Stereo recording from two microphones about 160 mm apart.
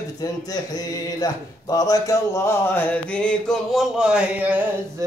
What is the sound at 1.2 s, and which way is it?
A man's voice, 25° left (ahead or behind).